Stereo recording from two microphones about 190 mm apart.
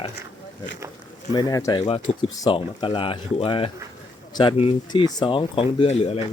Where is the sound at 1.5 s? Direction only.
20° left (ahead or behind).